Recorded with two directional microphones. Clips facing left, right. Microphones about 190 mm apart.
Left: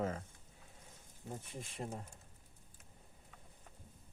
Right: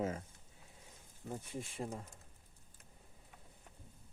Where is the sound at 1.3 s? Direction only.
10° right (ahead or behind).